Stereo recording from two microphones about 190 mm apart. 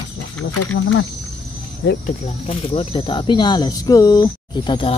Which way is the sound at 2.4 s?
30° left (ahead or behind).